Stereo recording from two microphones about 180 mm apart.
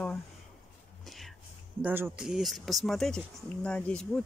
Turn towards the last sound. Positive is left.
turn(degrees=5)  # may be behind; listen again after turning